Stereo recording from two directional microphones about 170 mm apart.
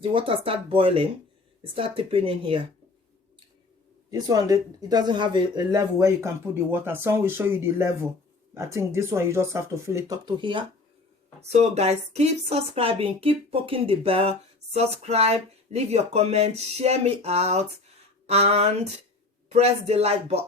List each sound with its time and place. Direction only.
0.0 s a woman's voice: 30° right (ahead or behind)
4.1 s speech: 20° right (ahead or behind)
11.3 s a woman's voice: 40° right (ahead or behind)